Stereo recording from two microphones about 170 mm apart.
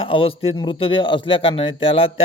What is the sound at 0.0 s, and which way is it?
A man's voice, 30° left (ahead or behind).